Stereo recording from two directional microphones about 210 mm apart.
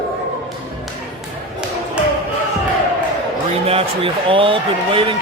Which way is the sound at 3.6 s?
25° right (ahead or behind).